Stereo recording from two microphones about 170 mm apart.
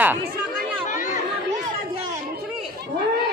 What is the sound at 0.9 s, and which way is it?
Chatter, 50° left (ahead or behind).